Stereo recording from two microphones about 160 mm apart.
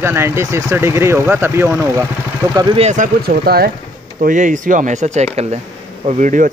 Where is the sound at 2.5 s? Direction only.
35° right (ahead or behind).